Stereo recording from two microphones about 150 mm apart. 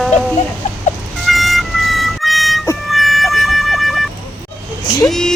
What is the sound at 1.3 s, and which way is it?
Music, centre (ahead or behind).